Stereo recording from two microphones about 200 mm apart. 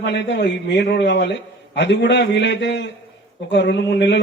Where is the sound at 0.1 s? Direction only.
60° left (ahead or behind).